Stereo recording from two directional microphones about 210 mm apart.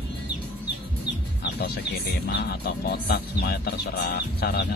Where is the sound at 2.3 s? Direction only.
50° left (ahead or behind).